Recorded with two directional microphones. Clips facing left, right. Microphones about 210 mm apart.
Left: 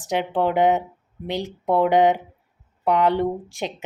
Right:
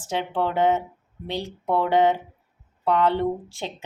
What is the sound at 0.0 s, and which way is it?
Speech, 15° left (ahead or behind).